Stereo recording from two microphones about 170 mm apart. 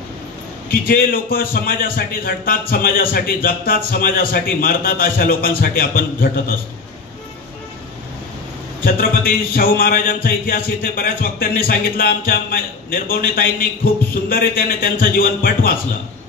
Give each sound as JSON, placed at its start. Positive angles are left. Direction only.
{"t": 0.7, "sound": "speech", "side_deg": 55}
{"t": 8.8, "sound": "speech", "side_deg": 60}